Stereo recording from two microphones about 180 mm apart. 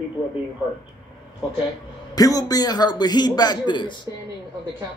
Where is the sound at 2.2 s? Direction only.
20° left (ahead or behind).